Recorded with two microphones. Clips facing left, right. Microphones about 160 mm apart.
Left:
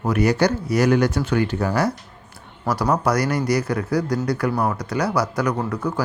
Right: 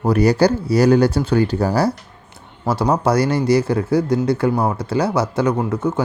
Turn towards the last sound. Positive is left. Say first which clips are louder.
# right 4 dB
turn(degrees=-25)  # may be behind; listen again after turning